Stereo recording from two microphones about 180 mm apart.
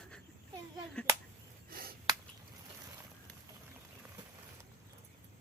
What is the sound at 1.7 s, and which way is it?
Finger snapping, 55° right (ahead or behind).